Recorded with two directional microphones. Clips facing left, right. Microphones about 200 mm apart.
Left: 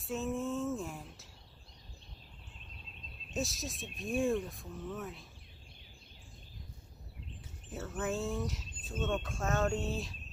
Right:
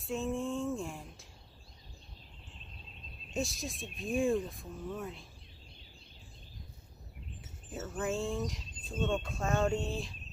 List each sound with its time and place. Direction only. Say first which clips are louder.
0.0 s a sound: right 1 dB; centre (ahead or behind)
3.3 s speech: right 1 dB; centre (ahead or behind)
8.0 s speech: right 1 dB; centre (ahead or behind)